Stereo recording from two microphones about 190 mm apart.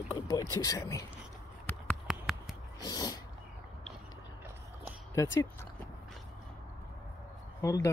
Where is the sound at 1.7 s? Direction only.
10° left (ahead or behind).